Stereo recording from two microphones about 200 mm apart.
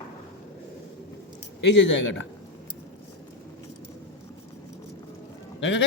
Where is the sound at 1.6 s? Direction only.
65° left (ahead or behind).